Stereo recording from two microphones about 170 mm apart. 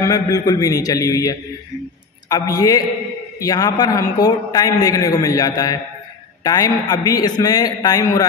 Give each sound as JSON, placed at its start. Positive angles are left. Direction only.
{"t": 0.0, "sound": "a man's voice", "side_deg": 20}